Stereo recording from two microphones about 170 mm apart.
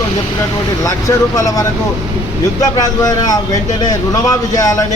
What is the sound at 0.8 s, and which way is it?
A man's voice, 20° left (ahead or behind).